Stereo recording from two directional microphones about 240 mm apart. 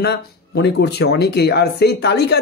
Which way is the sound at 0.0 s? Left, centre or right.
Left.